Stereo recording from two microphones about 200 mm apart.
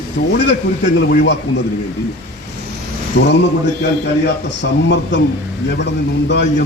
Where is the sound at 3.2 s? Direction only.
55° left (ahead or behind).